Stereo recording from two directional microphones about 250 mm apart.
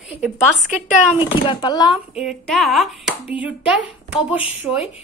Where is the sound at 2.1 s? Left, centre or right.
Centre.